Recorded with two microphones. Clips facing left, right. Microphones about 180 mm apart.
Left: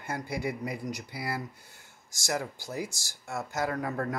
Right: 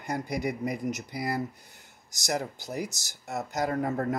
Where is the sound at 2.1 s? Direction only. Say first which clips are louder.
Right 2 dB; 20° right (ahead or behind).